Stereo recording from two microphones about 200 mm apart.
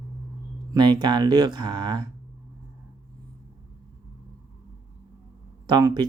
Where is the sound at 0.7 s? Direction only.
20° right (ahead or behind).